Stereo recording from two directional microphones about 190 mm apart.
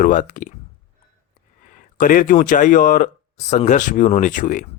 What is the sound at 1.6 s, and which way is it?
Speech, 45° left (ahead or behind).